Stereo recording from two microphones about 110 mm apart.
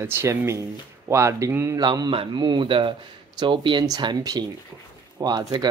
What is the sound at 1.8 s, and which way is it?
Speech, 40° right (ahead or behind).